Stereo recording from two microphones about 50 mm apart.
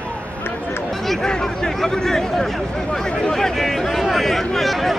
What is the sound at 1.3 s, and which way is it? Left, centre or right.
Speech, centre.